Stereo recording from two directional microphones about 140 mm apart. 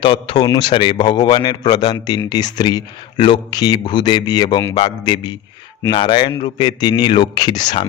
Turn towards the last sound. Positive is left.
turn(degrees=30)  # may be behind; listen again after turning